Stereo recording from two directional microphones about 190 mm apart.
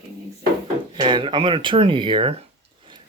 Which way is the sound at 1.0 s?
25° right (ahead or behind).